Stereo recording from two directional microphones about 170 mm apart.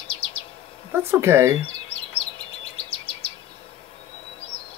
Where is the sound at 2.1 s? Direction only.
35° left (ahead or behind).